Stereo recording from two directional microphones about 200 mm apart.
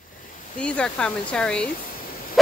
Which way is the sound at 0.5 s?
5° left (ahead or behind).